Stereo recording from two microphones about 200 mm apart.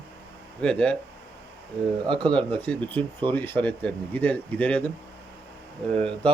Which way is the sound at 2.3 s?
5° left (ahead or behind).